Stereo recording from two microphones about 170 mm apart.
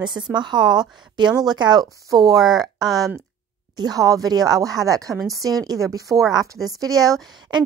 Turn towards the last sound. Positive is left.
turn(degrees=-25)  # may be behind; listen again after turning